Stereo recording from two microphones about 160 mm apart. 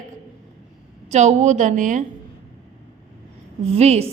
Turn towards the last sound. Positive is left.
turn(degrees=-40)  # may be behind; listen again after turning